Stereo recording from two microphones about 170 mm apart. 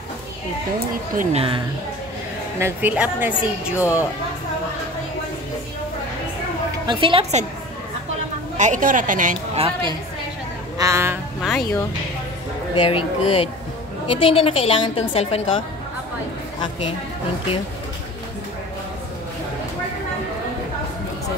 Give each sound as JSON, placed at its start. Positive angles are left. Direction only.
{"t": 1.1, "sound": "a woman's voice", "side_deg": -35}
{"t": 2.6, "sound": "a woman's voice", "side_deg": -10}
{"t": 3.7, "sound": "a woman's voice", "side_deg": 15}
{"t": 6.9, "sound": "a woman's voice", "side_deg": -30}
{"t": 8.5, "sound": "a woman's voice", "side_deg": -45}
{"t": 9.6, "sound": "a woman's voice", "side_deg": -30}
{"t": 10.8, "sound": "a woman's voice", "side_deg": -15}
{"t": 12.7, "sound": "a woman's voice", "side_deg": 30}